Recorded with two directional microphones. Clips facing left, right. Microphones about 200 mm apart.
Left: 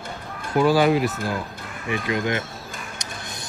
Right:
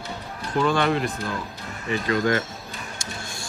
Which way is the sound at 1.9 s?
15° left (ahead or behind).